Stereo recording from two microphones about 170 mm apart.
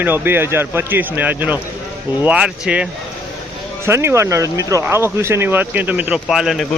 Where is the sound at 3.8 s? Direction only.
15° right (ahead or behind).